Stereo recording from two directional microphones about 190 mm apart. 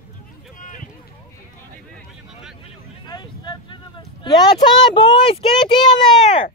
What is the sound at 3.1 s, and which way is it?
Vehicle, 25° left (ahead or behind).